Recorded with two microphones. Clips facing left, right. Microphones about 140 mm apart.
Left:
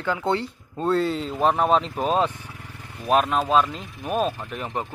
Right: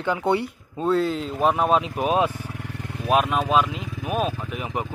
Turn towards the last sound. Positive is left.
turn(degrees=-5)  # may be behind; listen again after turning